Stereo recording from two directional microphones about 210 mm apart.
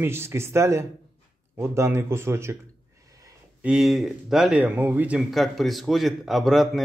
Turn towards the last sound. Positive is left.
turn(degrees=0)  # may be behind; listen again after turning